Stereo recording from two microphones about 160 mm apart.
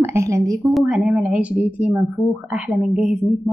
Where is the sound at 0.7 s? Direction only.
5° right (ahead or behind).